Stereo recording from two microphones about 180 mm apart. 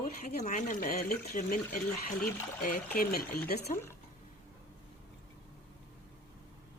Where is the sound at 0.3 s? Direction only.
45° left (ahead or behind).